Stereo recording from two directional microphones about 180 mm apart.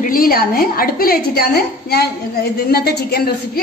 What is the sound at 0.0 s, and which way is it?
A woman's voice, 50° left (ahead or behind).